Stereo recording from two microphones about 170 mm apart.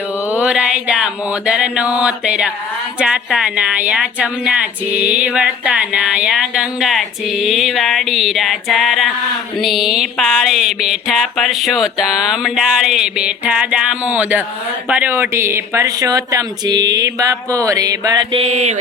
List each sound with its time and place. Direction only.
0.3 s speech: 5° right (ahead or behind); by 18.8 s 40° right (ahead or behind)